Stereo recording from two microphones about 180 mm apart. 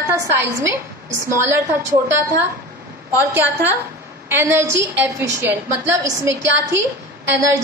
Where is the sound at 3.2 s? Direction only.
10° right (ahead or behind).